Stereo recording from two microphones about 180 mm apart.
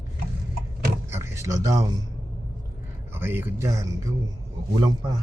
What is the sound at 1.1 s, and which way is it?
Speech, 15° right (ahead or behind).